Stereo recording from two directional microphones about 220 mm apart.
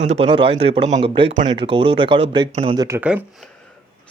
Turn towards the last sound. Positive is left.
turn(degrees=-10)  # may be behind; listen again after turning